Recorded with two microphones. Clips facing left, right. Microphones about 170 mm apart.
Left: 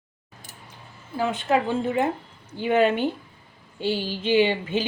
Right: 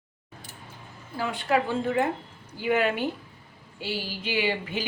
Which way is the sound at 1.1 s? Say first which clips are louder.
Left 4 dB; 20° left (ahead or behind).